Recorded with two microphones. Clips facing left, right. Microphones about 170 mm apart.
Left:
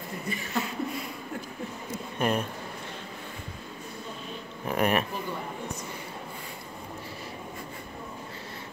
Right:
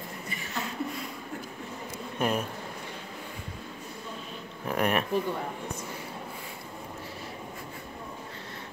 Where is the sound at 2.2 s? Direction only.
5° right (ahead or behind).